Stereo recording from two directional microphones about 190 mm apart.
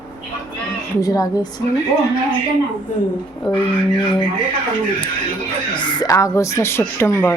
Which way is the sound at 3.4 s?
5° left (ahead or behind).